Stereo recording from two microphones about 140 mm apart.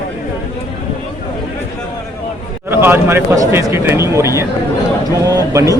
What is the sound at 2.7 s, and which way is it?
Speech, 15° right (ahead or behind).